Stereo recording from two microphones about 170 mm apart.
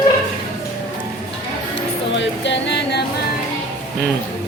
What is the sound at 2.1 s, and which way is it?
Music, 90° left.